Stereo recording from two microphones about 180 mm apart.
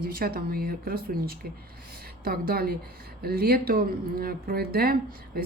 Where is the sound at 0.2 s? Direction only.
55° right (ahead or behind).